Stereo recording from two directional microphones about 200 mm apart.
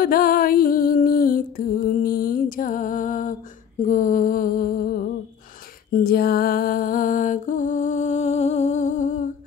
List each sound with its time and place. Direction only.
0.0 s music: 45° left (ahead or behind)
3.8 s mantra: 40° left (ahead or behind)
6.0 s music: 50° left (ahead or behind)